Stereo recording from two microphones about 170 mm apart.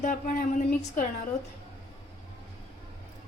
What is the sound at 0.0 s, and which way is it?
Speech, 50° left (ahead or behind).